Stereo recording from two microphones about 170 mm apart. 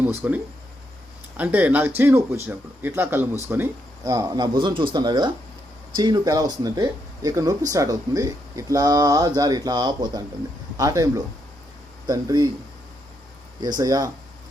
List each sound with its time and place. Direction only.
0.1 s speech: 15° right (ahead or behind)
1.4 s speech: 10° right (ahead or behind)
13.6 s speech: 20° right (ahead or behind)